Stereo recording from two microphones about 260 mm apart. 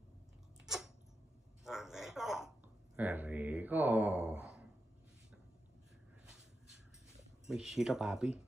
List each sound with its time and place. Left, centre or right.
0.7 s dog: centre
1.6 s a sound: centre
3.0 s speech: centre
7.4 s speech: centre